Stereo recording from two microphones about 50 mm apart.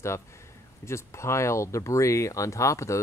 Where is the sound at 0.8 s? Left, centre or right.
Left.